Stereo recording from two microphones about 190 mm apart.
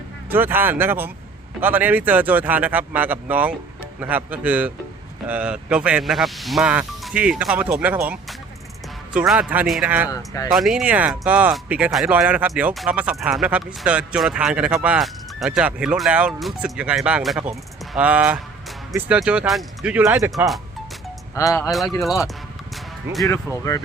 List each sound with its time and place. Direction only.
0.3 s speech: 10° right (ahead or behind)
10.1 s speech: 20° left (ahead or behind)
10.5 s speech: centre (ahead or behind)
21.3 s speech: 15° left (ahead or behind)
21.7 s speech: centre (ahead or behind)
23.5 s speech: 15° left (ahead or behind)